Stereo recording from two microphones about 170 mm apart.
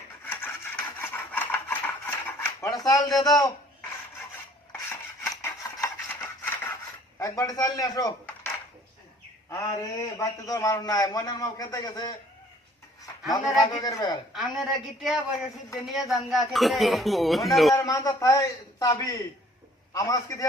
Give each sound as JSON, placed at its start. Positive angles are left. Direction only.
{"t": 0.3, "sound": "rub", "side_deg": 10}
{"t": 3.2, "sound": "a man's voice", "side_deg": 20}
{"t": 4.9, "sound": "a sound", "side_deg": 15}
{"t": 7.2, "sound": "a man's voice", "side_deg": 20}
{"t": 9.5, "sound": "a man's voice", "side_deg": 20}
{"t": 13.3, "sound": "a man's voice", "side_deg": 25}
{"t": 14.3, "sound": "speech", "side_deg": 0}
{"t": 17.7, "sound": "a man's voice", "side_deg": 20}